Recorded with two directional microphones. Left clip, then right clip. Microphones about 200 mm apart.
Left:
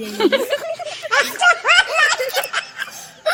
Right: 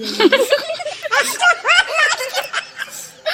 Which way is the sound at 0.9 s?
Centre (ahead or behind).